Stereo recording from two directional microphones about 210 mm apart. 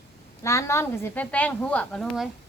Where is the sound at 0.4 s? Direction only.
15° left (ahead or behind).